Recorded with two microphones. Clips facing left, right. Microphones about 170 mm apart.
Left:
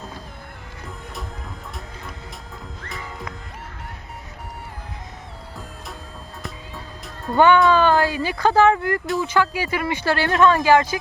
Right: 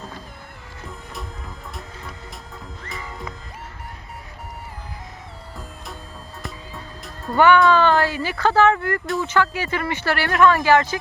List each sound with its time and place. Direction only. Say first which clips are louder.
2.9 s music: even; centre (ahead or behind)
6.4 s music: right 1 dB; centre (ahead or behind)
7.3 s speech: even; 15° left (ahead or behind)